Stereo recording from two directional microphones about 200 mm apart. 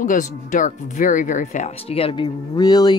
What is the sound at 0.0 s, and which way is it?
Speech, 40° left (ahead or behind).